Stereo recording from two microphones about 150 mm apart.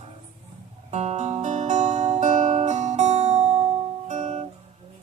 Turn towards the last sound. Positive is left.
turn(degrees=-50)  # may be behind; listen again after turning